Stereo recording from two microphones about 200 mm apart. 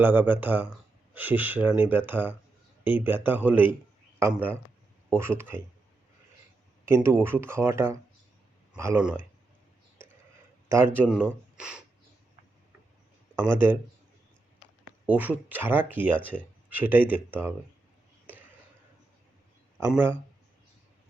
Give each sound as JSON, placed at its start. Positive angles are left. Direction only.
{"t": 0.0, "sound": "speech", "side_deg": -10}
{"t": 6.8, "sound": "speech", "side_deg": -10}
{"t": 10.7, "sound": "speech", "side_deg": -10}
{"t": 13.5, "sound": "speech", "side_deg": -10}
{"t": 15.0, "sound": "speech", "side_deg": -10}
{"t": 19.9, "sound": "speech", "side_deg": -10}